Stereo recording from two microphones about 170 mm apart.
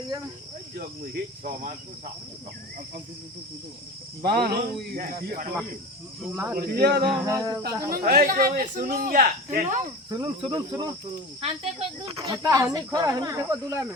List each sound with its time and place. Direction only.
0.8 s cricket: 55° right (ahead or behind)
4.2 s speech: 65° right (ahead or behind)
4.9 s cricket: 55° right (ahead or behind)
6.3 s speech: 10° right (ahead or behind)
6.6 s speech: 65° right (ahead or behind)
7.3 s speech: 20° right (ahead or behind)
7.9 s a man's voice: 60° right (ahead or behind)
10.1 s speech: 25° right (ahead or behind)
11.3 s speech: 35° right (ahead or behind)